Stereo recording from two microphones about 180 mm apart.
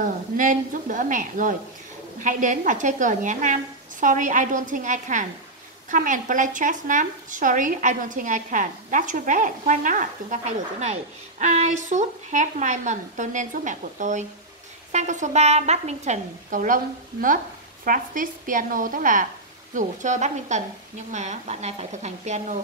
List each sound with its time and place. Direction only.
0.0 s a woman's voice: 45° right (ahead or behind)